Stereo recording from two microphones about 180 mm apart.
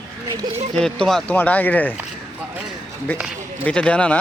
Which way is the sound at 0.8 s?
5° left (ahead or behind).